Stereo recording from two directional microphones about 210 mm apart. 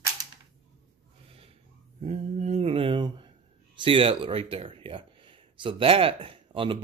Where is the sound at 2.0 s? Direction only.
35° right (ahead or behind).